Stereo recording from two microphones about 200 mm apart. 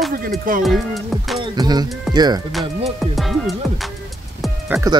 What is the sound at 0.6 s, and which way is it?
Music, centre (ahead or behind).